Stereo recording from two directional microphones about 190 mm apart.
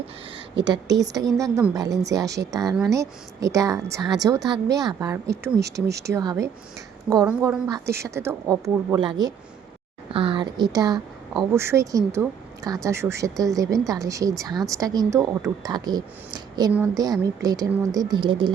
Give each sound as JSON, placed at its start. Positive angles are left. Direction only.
{"t": 0.9, "sound": "speech", "side_deg": -20}
{"t": 5.5, "sound": "speech", "side_deg": -60}
{"t": 6.1, "sound": "speech", "side_deg": -20}